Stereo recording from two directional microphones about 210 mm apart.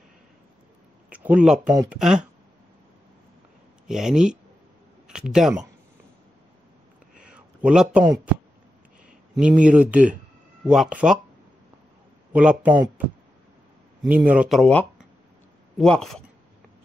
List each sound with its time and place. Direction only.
1.1 s speech: 5° right (ahead or behind)
3.8 s speech: 5° right (ahead or behind)
7.2 s a sound: 5° right (ahead or behind)
9.3 s speech: 5° right (ahead or behind)
12.3 s a man's voice: 5° right (ahead or behind)
14.0 s speech: 5° right (ahead or behind)